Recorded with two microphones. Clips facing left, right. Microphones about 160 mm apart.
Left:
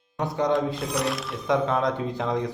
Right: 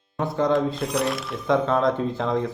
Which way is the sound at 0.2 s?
15° left (ahead or behind).